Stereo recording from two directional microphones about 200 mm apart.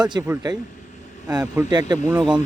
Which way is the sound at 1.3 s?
20° right (ahead or behind).